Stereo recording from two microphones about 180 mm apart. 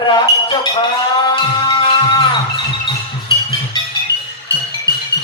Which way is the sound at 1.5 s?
25° left (ahead or behind).